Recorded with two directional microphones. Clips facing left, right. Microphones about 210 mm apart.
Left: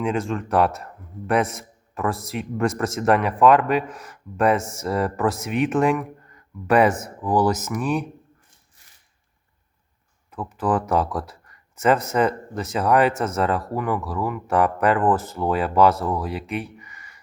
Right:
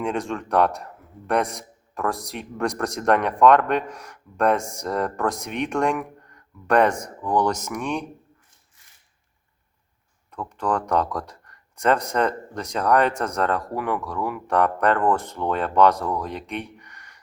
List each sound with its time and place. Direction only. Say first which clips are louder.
0.0 s speech: left 2 dB; centre (ahead or behind)
10.6 s speech: left 2 dB; 5° left (ahead or behind)